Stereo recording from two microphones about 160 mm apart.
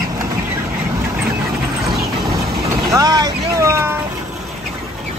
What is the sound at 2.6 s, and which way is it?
Vehicle, 20° right (ahead or behind).